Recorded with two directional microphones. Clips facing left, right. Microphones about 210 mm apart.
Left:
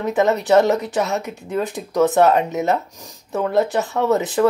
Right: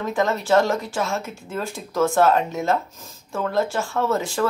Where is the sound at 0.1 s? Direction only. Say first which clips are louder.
Left 4 dB; 20° left (ahead or behind).